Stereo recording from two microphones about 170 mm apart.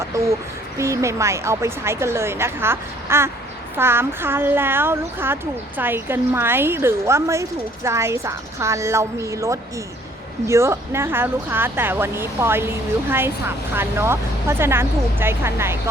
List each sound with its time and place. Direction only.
0.8 s speech: 15° right (ahead or behind)